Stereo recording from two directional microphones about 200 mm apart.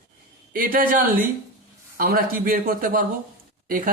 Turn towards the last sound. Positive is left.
turn(degrees=-45)  # may be behind; listen again after turning